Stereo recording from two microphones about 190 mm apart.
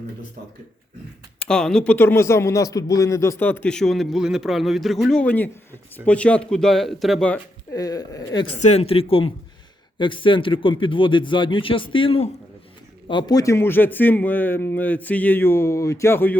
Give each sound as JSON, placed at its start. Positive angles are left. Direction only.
{"t": 1.4, "sound": "speech", "side_deg": 5}
{"t": 7.7, "sound": "a man's voice", "side_deg": 20}
{"t": 8.5, "sound": "a man's voice", "side_deg": 35}